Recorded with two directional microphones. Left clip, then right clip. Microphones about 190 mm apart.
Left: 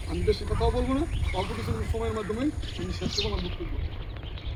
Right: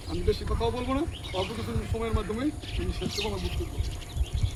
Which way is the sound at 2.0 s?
45° left (ahead or behind).